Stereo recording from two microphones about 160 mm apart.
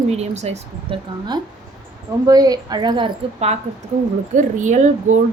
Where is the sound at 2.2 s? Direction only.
25° right (ahead or behind).